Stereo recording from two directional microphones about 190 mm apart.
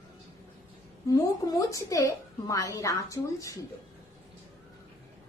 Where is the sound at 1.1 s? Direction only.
20° left (ahead or behind).